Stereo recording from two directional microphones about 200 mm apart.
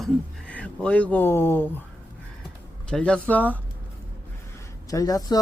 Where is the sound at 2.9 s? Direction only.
5° left (ahead or behind).